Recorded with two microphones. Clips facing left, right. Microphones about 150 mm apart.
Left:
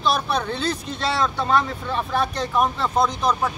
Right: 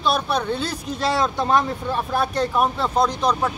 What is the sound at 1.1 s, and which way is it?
Speech, 15° right (ahead or behind).